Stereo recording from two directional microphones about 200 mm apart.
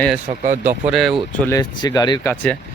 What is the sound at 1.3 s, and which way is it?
Speech, 15° left (ahead or behind).